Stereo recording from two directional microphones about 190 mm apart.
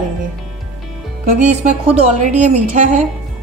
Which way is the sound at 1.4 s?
35° right (ahead or behind).